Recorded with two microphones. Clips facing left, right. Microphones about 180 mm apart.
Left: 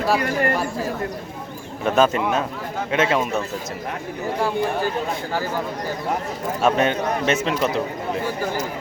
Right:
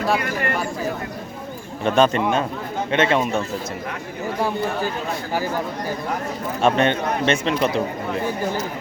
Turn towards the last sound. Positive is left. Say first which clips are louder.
# right 1 dB
turn(degrees=0)  # may be behind; listen again after turning